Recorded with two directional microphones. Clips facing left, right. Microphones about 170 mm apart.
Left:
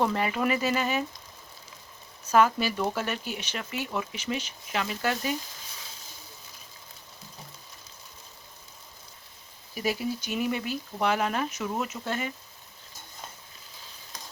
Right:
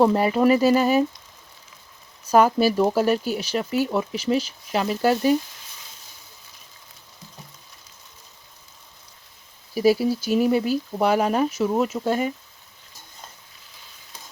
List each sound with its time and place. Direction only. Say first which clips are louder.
0.0 s speech: right 9 dB; 35° right (ahead or behind)
2.3 s speech: right 6 dB; 40° right (ahead or behind)
9.7 s speech: right 11 dB; 35° right (ahead or behind)